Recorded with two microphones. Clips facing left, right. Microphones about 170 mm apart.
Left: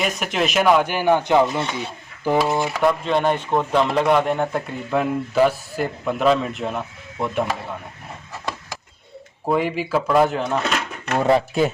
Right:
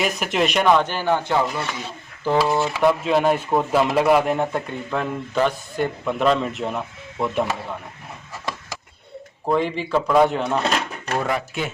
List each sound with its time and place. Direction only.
0.0 s speech: centre (ahead or behind); by 2.6 s 15° left (ahead or behind)
2.7 s speech: 5° right (ahead or behind)
9.5 s speech: 5° left (ahead or behind)
11.2 s speech: 30° left (ahead or behind)